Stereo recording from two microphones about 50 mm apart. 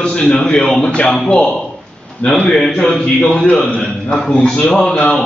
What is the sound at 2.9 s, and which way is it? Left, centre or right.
A man's voice, left.